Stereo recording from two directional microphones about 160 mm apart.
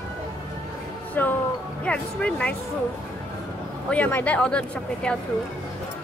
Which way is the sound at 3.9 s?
10° left (ahead or behind).